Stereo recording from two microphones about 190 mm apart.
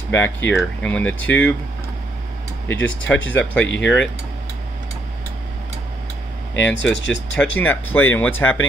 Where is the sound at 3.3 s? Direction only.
5° left (ahead or behind).